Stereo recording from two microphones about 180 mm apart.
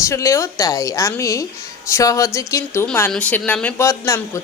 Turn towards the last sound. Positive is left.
turn(degrees=15)  # may be behind; listen again after turning